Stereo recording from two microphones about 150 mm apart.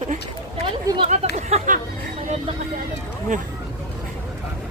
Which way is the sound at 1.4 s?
50° right (ahead or behind).